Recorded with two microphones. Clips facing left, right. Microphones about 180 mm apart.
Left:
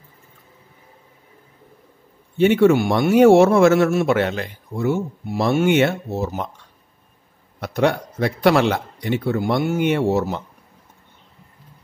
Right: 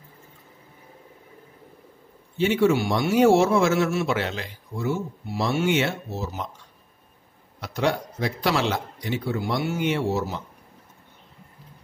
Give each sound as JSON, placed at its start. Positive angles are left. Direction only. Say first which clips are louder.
{"t": 2.3, "sound": "a man's voice", "louder": "left 6 dB", "side_deg": 55}
{"t": 7.6, "sound": "a man's voice", "louder": "left 5 dB", "side_deg": 60}